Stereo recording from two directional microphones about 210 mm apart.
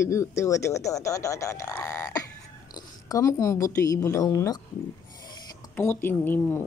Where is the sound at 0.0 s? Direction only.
15° left (ahead or behind).